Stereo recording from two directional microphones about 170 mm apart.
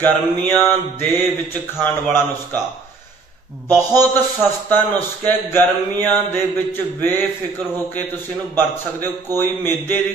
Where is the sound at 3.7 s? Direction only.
15° left (ahead or behind).